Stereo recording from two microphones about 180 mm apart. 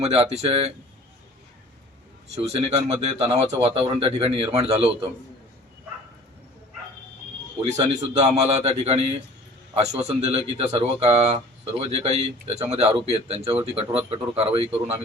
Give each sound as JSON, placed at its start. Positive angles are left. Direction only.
{"t": 0.0, "sound": "speech", "side_deg": -35}
{"t": 2.5, "sound": "speech", "side_deg": -35}
{"t": 7.6, "sound": "speech", "side_deg": -35}